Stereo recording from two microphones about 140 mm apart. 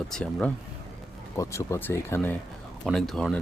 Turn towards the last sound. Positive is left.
turn(degrees=0)  # may be behind; listen again after turning